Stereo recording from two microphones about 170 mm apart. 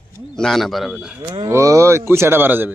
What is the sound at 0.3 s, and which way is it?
Speech, centre (ahead or behind).